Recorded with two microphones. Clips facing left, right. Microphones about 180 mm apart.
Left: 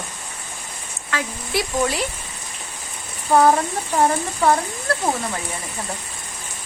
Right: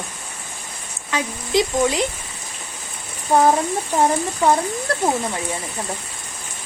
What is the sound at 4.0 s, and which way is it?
Speech, 20° right (ahead or behind).